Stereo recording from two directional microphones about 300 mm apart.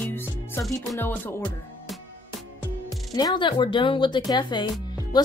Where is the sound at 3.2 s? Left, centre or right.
Centre.